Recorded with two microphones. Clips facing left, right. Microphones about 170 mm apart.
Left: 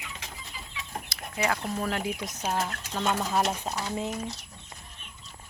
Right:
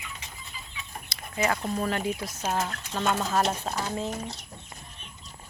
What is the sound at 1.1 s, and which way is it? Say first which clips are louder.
Speech: right 2 dB; centre (ahead or behind).